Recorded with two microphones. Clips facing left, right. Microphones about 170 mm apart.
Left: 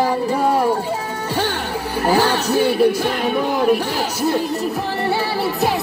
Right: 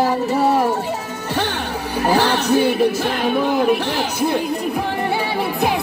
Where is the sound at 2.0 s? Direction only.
10° left (ahead or behind).